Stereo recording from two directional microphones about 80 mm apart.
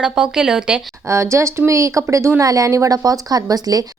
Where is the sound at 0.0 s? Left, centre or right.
Centre.